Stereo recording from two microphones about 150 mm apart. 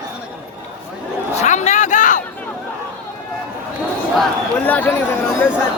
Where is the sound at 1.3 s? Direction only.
50° left (ahead or behind).